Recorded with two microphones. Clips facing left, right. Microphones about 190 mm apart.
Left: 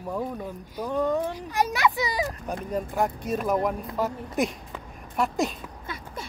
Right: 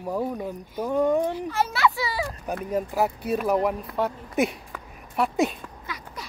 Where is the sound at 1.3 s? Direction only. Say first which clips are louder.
Even; 15° left (ahead or behind).